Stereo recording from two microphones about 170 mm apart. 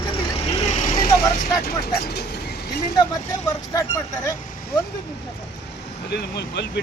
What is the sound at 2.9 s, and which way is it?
Speech, 20° left (ahead or behind).